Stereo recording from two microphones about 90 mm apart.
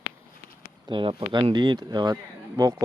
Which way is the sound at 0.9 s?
65° right (ahead or behind).